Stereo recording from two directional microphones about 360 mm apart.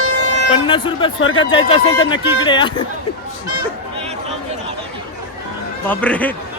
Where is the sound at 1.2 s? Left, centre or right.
Left.